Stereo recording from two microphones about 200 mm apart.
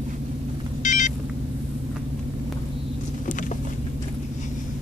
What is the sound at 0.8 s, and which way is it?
Vehicle, 40° left (ahead or behind).